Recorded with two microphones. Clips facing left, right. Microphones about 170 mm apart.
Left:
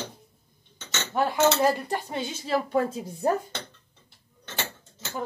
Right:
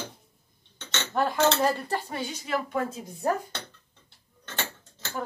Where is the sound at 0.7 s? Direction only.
5° left (ahead or behind).